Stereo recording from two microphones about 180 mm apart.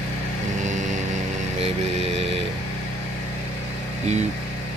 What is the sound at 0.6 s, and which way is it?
Vehicle, 45° right (ahead or behind).